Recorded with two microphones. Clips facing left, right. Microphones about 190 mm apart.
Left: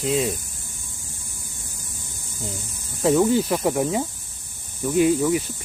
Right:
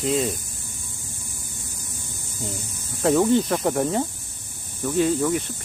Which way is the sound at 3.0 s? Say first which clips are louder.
Even; centre (ahead or behind).